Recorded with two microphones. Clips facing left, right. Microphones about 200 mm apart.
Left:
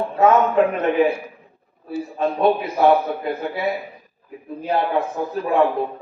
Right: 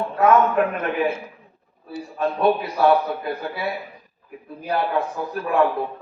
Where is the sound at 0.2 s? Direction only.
25° left (ahead or behind).